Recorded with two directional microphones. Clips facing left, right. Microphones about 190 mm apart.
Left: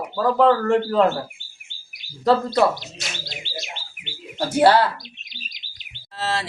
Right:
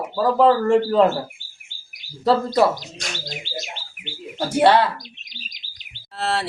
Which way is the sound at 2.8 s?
45° right (ahead or behind).